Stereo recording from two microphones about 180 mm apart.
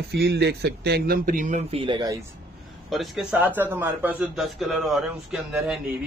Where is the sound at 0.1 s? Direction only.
65° right (ahead or behind); by 1.8 s 45° right (ahead or behind).